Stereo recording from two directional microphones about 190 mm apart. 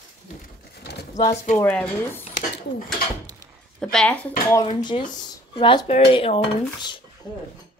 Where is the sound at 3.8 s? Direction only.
5° left (ahead or behind).